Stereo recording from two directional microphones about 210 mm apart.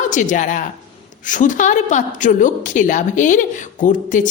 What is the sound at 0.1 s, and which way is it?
A woman's voice, 35° left (ahead or behind).